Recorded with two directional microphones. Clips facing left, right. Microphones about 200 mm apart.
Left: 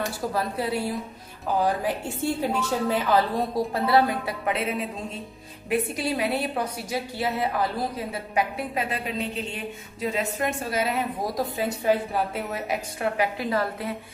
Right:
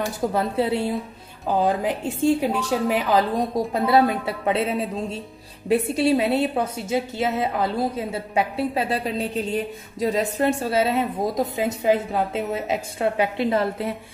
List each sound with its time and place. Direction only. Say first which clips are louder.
0.3 s a woman's voice: right 5 dB; 25° right (ahead or behind)